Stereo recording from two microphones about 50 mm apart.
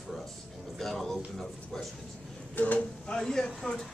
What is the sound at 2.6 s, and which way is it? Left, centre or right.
Speech, left.